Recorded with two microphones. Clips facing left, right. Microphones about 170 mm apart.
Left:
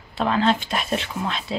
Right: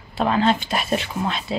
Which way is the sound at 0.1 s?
10° right (ahead or behind).